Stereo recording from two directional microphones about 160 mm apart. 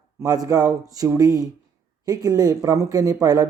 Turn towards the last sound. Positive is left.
turn(degrees=-25)  # may be behind; listen again after turning